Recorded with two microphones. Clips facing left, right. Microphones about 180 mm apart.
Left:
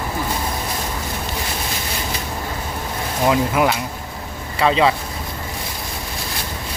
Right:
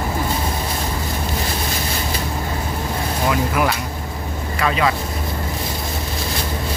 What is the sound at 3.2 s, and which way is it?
Speech, 20° left (ahead or behind).